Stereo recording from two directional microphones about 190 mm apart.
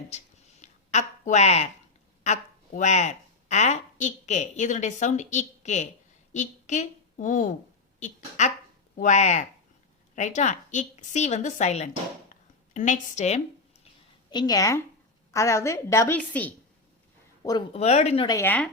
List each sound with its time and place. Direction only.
0.6 s a sound: 40° left (ahead or behind)
2.2 s a woman's voice: 40° left (ahead or behind)
12.3 s a sound: 40° left (ahead or behind)
14.3 s a woman's voice: 20° left (ahead or behind)
17.7 s a woman's voice: 35° left (ahead or behind)
18.3 s a woman's voice: 15° left (ahead or behind)